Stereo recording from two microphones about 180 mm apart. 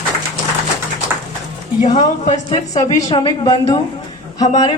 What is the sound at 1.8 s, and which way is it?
Speech, 40° left (ahead or behind).